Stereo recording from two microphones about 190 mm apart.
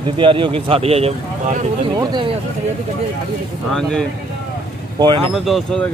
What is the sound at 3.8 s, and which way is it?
Speech, 5° left (ahead or behind).